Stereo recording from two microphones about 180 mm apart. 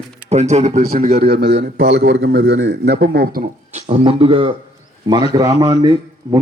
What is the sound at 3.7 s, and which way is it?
A man's voice, 35° right (ahead or behind).